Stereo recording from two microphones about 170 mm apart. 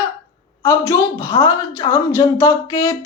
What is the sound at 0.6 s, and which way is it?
A woman's voice, 20° left (ahead or behind).